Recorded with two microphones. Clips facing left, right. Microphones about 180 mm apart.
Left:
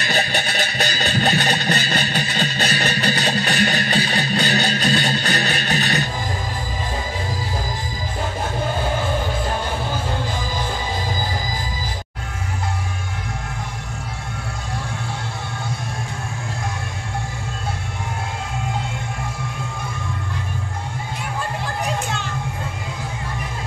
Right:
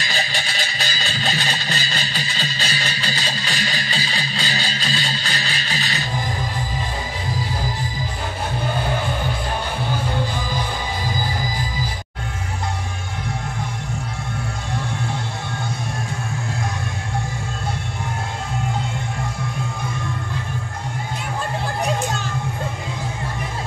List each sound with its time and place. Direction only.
0.0 s music: 60° left (ahead or behind)